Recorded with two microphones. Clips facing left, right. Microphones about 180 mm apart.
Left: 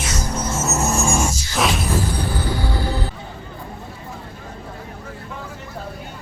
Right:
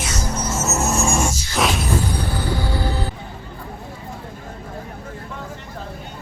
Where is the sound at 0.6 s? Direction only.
Centre (ahead or behind).